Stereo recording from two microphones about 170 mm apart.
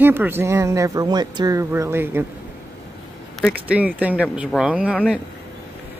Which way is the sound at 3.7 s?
10° right (ahead or behind).